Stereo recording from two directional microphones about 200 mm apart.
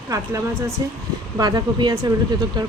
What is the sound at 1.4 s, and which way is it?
Speech, 20° right (ahead or behind).